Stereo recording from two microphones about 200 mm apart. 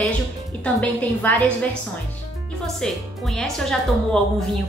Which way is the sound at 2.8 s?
Centre (ahead or behind).